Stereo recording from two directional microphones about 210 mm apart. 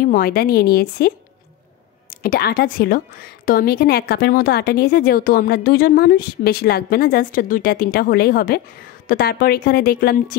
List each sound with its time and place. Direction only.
0.0 s speech: 45° left (ahead or behind)